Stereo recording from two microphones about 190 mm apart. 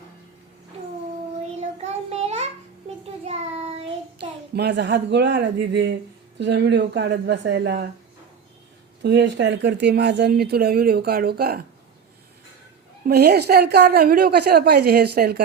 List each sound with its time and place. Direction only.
1.4 s child singing: 35° right (ahead or behind)
4.5 s a woman's voice: 65° right (ahead or behind)
9.0 s speech: 65° right (ahead or behind)
13.1 s speech: 60° right (ahead or behind)